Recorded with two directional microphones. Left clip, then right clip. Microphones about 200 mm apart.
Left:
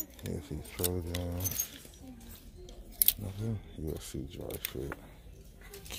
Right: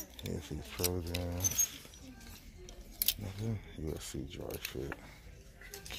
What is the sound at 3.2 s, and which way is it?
Speech, 10° left (ahead or behind).